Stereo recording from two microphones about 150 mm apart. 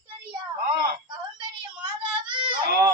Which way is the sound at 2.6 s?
90° right.